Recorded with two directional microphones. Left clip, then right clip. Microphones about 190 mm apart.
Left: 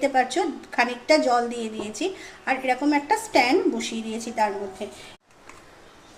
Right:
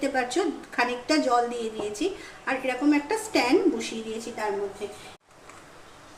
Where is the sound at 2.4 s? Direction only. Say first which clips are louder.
Left 2 dB; 25° left (ahead or behind).